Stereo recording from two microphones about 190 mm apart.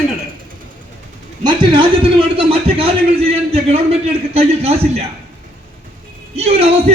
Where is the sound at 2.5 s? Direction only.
30° right (ahead or behind).